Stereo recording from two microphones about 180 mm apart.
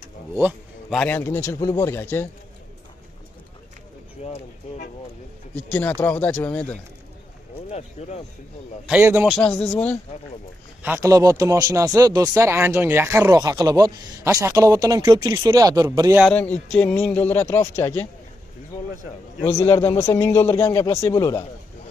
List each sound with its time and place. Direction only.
0.4 s a sound: 10° right (ahead or behind)
0.9 s speech: 10° left (ahead or behind)
4.2 s speech: 35° left (ahead or behind)
5.7 s speech: 10° left (ahead or behind)
8.0 s speech: 40° left (ahead or behind)
8.8 s speech: 10° right (ahead or behind)
9.3 s speech: 5° left (ahead or behind)
10.8 s speech: 15° right (ahead or behind)
16.3 s speech: 10° left (ahead or behind)
19.4 s speech: 15° left (ahead or behind)